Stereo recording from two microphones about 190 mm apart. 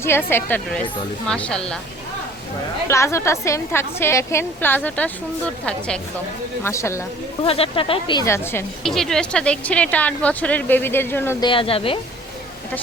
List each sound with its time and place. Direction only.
0.0 s speech: 10° left (ahead or behind)
2.9 s speech: 15° left (ahead or behind)
6.7 s speech: 15° left (ahead or behind)
7.4 s speech: 30° left (ahead or behind); by 8.6 s 15° left (ahead or behind)
8.8 s speech: centre (ahead or behind)
11.3 s speech: 25° left (ahead or behind)